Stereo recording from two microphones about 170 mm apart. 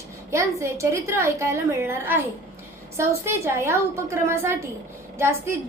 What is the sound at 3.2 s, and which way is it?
A woman's voice, 15° right (ahead or behind).